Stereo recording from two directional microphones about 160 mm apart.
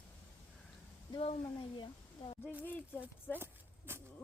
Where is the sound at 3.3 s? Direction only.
15° right (ahead or behind).